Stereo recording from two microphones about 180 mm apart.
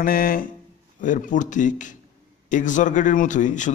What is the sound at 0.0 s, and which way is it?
A man's voice, 55° left (ahead or behind).